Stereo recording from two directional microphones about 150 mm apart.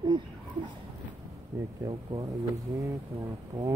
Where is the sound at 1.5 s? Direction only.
15° right (ahead or behind).